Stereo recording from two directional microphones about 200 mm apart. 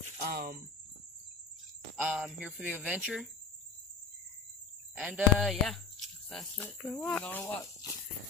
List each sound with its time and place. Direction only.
0.2 s speech: 50° right (ahead or behind)
2.0 s speech: 5° right (ahead or behind)
4.9 s speech: 5° right (ahead or behind)